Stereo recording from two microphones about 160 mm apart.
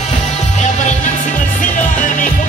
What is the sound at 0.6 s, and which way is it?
Music, 50° left (ahead or behind).